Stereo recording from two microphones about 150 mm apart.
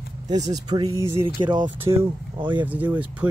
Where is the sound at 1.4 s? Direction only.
30° right (ahead or behind).